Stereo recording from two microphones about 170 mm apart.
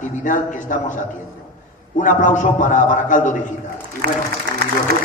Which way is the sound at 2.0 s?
50° left (ahead or behind).